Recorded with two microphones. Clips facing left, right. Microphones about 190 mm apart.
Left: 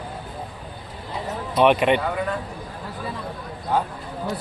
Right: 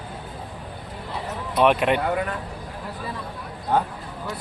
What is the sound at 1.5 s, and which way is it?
Speech, centre (ahead or behind).